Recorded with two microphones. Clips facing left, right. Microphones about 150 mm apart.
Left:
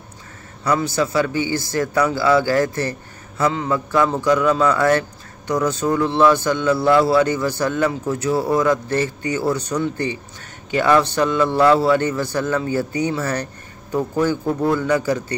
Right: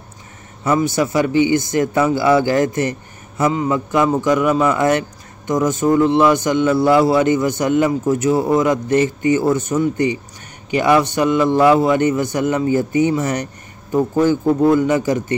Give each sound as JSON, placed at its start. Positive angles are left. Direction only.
{"t": 0.7, "sound": "a man's voice", "side_deg": -20}